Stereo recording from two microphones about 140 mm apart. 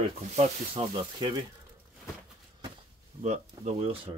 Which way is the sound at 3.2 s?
55° right (ahead or behind).